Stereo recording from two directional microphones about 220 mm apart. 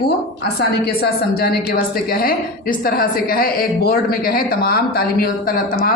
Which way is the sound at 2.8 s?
40° left (ahead or behind).